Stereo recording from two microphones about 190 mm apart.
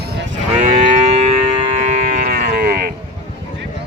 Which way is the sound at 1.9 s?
40° right (ahead or behind).